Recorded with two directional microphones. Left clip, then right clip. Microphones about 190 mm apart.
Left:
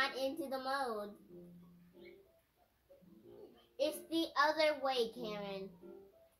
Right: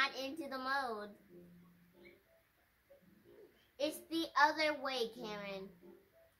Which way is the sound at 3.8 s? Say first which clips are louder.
Left 2 dB; 35° right (ahead or behind).